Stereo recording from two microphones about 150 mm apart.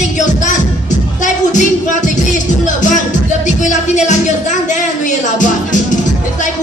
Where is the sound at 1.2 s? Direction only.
55° left (ahead or behind).